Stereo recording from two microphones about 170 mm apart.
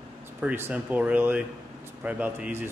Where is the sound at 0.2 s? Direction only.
10° right (ahead or behind).